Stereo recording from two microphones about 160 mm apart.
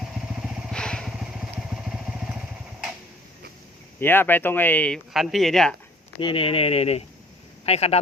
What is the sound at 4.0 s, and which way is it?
Speech, 15° left (ahead or behind).